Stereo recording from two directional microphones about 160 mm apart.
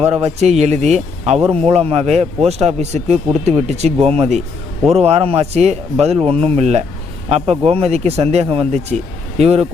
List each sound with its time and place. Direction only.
0.0 s speech: 40° right (ahead or behind)